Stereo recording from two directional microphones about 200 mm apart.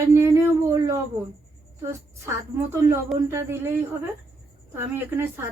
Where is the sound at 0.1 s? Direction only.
15° right (ahead or behind).